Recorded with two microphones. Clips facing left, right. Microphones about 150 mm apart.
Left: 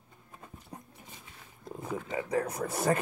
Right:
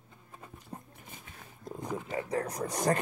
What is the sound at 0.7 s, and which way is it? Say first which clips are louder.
Dog: right 2 dB; 5° right (ahead or behind).